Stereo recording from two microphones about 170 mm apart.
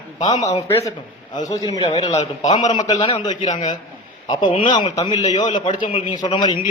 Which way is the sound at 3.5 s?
45° left (ahead or behind).